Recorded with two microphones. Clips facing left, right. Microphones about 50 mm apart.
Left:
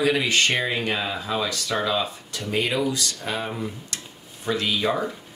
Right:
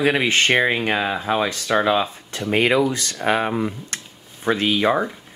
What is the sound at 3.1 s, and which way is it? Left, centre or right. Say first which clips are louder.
Speech: right 9 dB; right.